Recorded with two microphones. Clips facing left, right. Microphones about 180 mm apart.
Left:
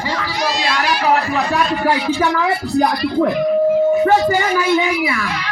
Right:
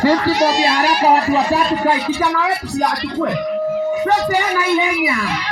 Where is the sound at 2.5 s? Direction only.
80° right.